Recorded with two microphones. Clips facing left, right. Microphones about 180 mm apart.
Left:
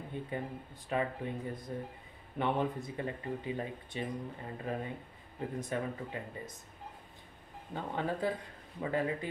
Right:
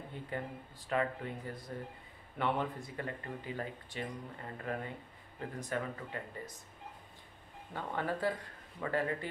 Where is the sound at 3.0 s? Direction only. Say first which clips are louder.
Left 3 dB; 20° left (ahead or behind).